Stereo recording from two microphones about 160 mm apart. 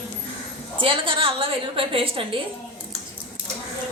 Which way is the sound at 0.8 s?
35° right (ahead or behind).